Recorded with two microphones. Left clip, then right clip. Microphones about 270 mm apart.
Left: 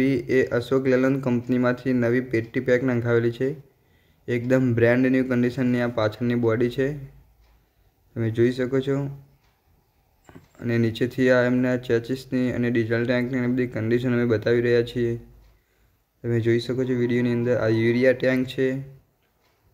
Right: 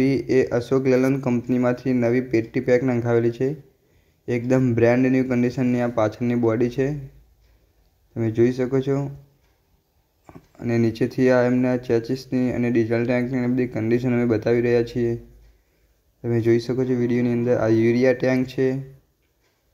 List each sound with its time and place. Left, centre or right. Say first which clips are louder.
0.0 s speech: right 2 dB; centre
8.1 s speech: right 2 dB; centre
10.2 s a sound: right 2 dB; centre
11.1 s speech: right 1 dB; centre
16.2 s speech: right 3 dB; centre